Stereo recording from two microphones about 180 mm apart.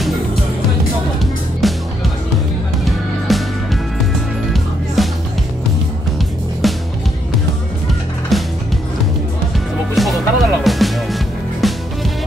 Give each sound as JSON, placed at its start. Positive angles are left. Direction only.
{"t": 1.6, "sound": "music", "side_deg": 0}
{"t": 2.8, "sound": "music", "side_deg": 0}
{"t": 5.0, "sound": "music", "side_deg": 0}
{"t": 6.6, "sound": "music", "side_deg": 0}
{"t": 8.3, "sound": "music", "side_deg": 0}
{"t": 9.9, "sound": "music", "side_deg": 0}